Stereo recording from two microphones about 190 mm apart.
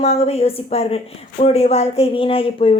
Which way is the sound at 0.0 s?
35° left (ahead or behind).